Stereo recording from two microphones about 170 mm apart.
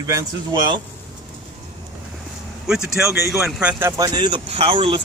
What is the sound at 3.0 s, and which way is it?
Speech, 15° right (ahead or behind).